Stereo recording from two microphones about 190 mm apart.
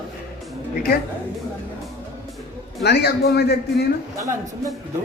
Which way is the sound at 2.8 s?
60° left (ahead or behind).